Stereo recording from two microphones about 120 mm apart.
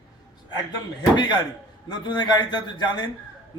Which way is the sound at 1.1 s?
40° left (ahead or behind).